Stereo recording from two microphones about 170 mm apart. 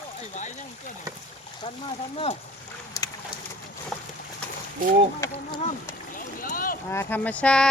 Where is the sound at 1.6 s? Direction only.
25° left (ahead or behind).